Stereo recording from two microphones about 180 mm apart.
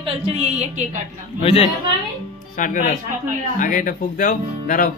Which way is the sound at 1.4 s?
35° left (ahead or behind).